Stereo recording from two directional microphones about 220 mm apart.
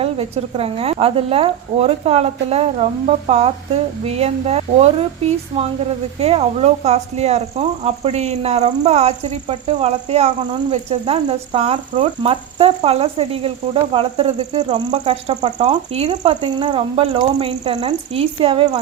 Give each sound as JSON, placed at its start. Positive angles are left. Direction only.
{"t": 0.0, "sound": "speech", "side_deg": -25}